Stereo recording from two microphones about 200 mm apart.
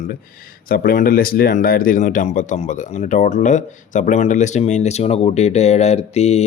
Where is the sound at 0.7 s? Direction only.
50° left (ahead or behind).